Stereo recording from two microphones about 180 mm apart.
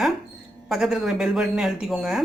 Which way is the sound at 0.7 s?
Centre (ahead or behind).